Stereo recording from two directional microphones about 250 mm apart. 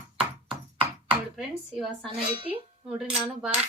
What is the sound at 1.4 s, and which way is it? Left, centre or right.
Cutlery, centre.